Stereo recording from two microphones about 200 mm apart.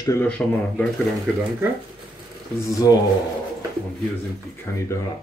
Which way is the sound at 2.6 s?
15° left (ahead or behind).